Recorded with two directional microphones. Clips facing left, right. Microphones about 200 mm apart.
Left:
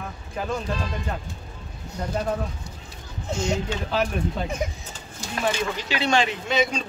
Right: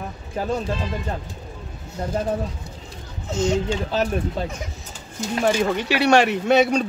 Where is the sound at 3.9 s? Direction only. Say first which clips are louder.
Even; 35° right (ahead or behind).